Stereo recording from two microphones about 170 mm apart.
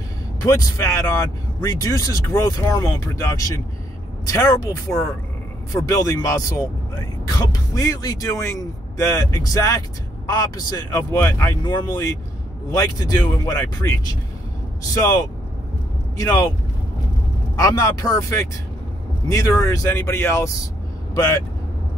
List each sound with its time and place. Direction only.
0.4 s speech: 20° left (ahead or behind)
17.6 s speech: 20° left (ahead or behind)